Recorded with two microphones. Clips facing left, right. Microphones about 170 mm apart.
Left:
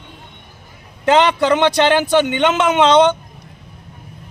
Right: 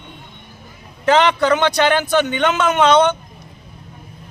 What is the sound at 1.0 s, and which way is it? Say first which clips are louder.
Speech: left 1 dB; 20° left (ahead or behind).